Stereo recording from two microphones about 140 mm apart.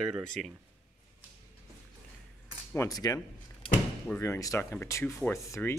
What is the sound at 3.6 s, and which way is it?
Door, 40° left (ahead or behind).